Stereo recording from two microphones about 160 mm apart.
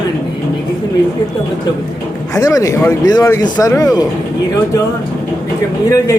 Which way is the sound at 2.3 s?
20° left (ahead or behind).